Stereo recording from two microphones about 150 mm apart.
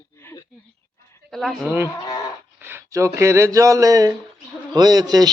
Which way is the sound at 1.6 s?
15° right (ahead or behind).